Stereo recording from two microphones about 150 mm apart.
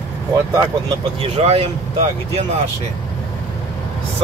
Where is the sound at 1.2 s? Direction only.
40° right (ahead or behind).